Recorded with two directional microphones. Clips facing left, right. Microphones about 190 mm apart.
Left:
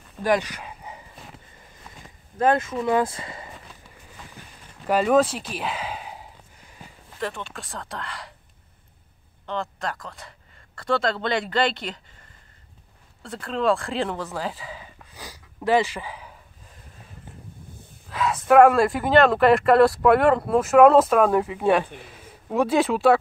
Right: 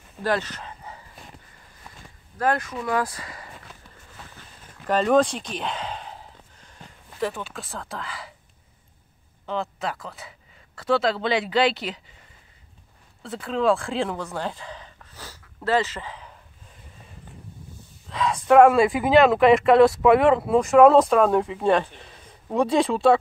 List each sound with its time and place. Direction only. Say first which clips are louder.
0.2 s bow-wow: left 3 dB; 15° left (ahead or behind)
2.0 s speech: left 3 dB; 20° left (ahead or behind)
4.8 s a sound: even; 5° left (ahead or behind)
7.2 s speech: right 3 dB; centre (ahead or behind)
9.5 s speech: right 1 dB; 5° right (ahead or behind)
13.2 s speech: right 1 dB; centre (ahead or behind)
18.0 s speech: even; 5° left (ahead or behind)